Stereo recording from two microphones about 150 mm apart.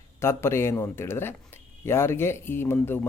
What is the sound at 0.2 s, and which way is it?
Speech, 15° left (ahead or behind).